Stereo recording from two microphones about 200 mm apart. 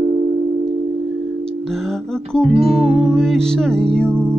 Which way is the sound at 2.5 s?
30° right (ahead or behind).